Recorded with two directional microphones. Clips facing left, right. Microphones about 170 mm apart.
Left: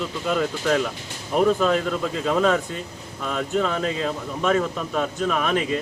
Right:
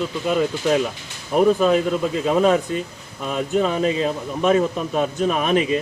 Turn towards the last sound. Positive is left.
turn(degrees=-15)  # may be behind; listen again after turning